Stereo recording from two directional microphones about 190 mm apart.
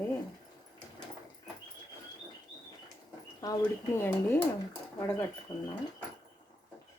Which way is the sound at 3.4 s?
15° left (ahead or behind).